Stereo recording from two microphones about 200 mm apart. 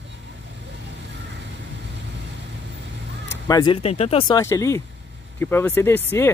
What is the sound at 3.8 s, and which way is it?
Speech, 30° left (ahead or behind).